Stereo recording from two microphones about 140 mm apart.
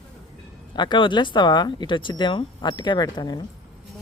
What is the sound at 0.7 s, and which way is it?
Speech, 35° left (ahead or behind).